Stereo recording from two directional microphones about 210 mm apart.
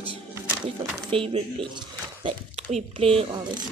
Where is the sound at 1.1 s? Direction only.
25° right (ahead or behind).